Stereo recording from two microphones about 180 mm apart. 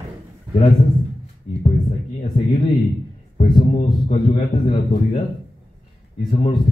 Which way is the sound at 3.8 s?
25° left (ahead or behind).